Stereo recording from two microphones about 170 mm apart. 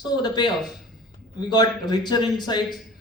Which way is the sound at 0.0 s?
25° left (ahead or behind).